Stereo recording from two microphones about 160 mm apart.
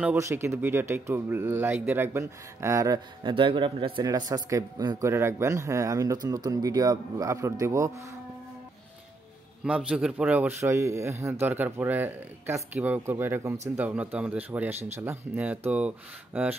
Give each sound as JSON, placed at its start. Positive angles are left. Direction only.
{"t": 0.0, "sound": "a man's voice", "side_deg": -15}
{"t": 9.7, "sound": "speech", "side_deg": -5}